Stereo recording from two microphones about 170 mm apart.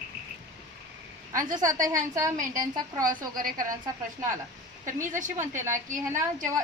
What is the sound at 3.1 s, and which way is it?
Speech, 55° right (ahead or behind).